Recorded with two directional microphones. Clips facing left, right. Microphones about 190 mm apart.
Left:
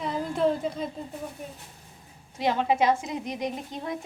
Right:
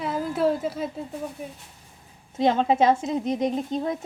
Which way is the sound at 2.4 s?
25° right (ahead or behind).